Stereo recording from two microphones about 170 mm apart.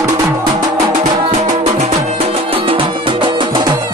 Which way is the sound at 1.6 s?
40° right (ahead or behind).